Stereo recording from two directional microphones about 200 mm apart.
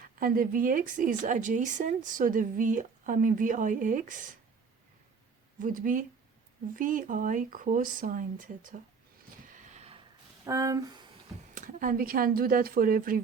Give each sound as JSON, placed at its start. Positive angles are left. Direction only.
{"t": 0.0, "sound": "a woman's voice", "side_deg": -45}
{"t": 5.5, "sound": "speech", "side_deg": -40}
{"t": 9.5, "sound": "a sound", "side_deg": -35}
{"t": 10.4, "sound": "speech", "side_deg": -15}
{"t": 11.5, "sound": "speech", "side_deg": -40}